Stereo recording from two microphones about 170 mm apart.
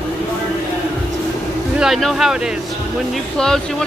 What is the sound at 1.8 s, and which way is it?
Speech, centre (ahead or behind).